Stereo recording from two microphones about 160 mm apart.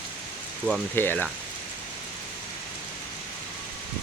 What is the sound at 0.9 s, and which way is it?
Speech, 10° left (ahead or behind).